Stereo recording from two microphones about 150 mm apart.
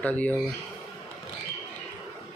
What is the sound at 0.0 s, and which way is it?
Speech, 10° left (ahead or behind).